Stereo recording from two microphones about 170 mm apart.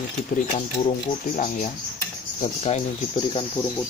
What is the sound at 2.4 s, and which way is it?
Speech, 40° left (ahead or behind).